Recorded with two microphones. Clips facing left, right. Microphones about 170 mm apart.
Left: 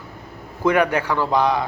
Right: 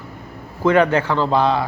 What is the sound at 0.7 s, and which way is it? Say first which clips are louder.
Speech: right 3 dB; 10° left (ahead or behind).